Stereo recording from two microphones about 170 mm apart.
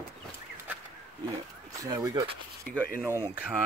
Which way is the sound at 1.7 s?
20° right (ahead or behind).